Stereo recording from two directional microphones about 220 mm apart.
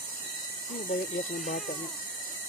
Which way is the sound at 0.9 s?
40° left (ahead or behind).